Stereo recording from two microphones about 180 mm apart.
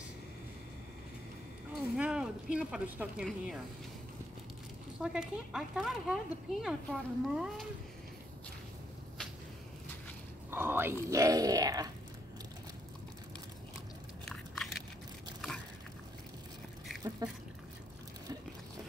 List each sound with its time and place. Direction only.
1.8 s speech: 5° right (ahead or behind)
5.0 s speech: 5° right (ahead or behind)
10.5 s speech: 10° right (ahead or behind)
14.2 s biting: 5° left (ahead or behind)
17.2 s speech: 20° right (ahead or behind)